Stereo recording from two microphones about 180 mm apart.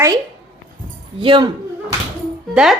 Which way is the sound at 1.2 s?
25° right (ahead or behind).